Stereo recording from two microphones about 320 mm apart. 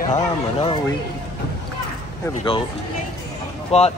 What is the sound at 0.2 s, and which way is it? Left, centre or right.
Speech, centre.